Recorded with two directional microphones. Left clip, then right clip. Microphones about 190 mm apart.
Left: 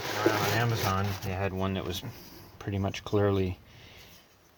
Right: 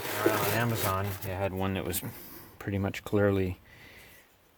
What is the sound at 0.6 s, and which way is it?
Speech, 40° right (ahead or behind).